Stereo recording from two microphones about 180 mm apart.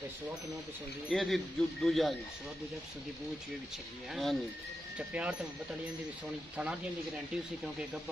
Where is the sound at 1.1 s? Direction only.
Centre (ahead or behind).